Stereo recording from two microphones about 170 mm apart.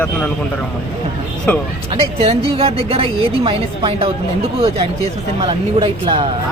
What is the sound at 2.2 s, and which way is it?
A woman's voice, 35° right (ahead or behind).